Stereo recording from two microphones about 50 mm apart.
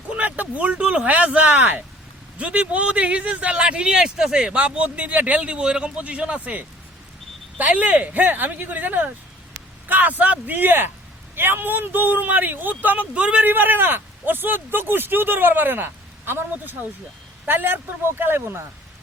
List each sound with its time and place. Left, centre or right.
0.1 s speech: right
13.1 s speech: right
13.4 s a man's voice: right